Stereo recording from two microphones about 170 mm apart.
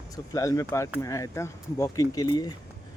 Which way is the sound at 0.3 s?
20° left (ahead or behind).